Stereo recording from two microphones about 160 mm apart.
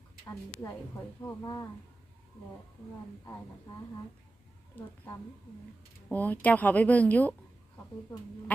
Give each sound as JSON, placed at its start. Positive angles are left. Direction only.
{"t": 1.2, "sound": "speech", "side_deg": 20}
{"t": 6.1, "sound": "a woman's voice", "side_deg": 10}